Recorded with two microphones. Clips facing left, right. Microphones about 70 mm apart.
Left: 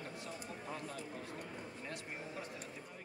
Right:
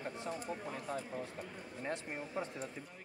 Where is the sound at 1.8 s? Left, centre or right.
Right.